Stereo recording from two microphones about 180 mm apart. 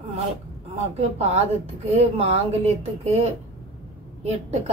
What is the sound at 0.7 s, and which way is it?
A woman's voice, 35° right (ahead or behind).